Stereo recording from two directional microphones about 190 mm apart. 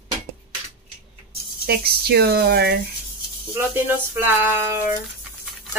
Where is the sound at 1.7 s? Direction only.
55° right (ahead or behind).